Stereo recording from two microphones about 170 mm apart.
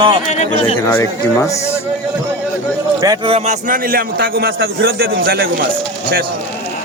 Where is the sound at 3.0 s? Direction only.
25° right (ahead or behind); by 5.5 s 70° right (ahead or behind).